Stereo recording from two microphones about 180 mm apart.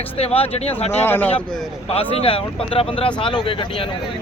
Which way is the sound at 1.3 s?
30° left (ahead or behind).